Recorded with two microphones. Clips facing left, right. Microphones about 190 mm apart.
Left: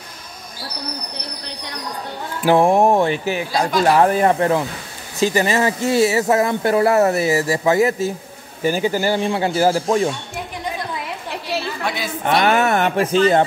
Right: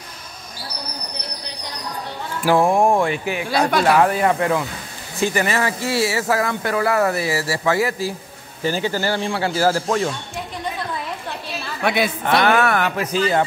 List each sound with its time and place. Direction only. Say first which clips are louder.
2.4 s speech: left 2 dB; 25° left (ahead or behind)
3.1 s speech: left 2 dB; 35° left (ahead or behind); by 10.1 s 15° left (ahead or behind)
11.8 s a woman's voice: right 3 dB; 65° right (ahead or behind)
12.4 s speech: left 1 dB; 20° left (ahead or behind)